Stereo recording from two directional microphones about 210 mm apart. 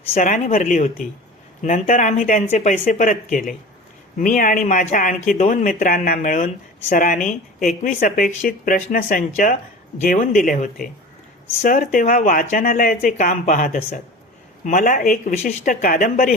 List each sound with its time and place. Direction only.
0.1 s speech: 35° left (ahead or behind)